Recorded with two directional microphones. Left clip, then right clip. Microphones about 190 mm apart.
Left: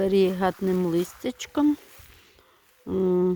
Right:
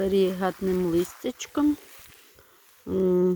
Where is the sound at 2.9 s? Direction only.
10° left (ahead or behind).